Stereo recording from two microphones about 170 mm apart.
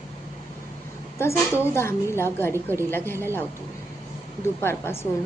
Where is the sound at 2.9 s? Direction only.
15° left (ahead or behind).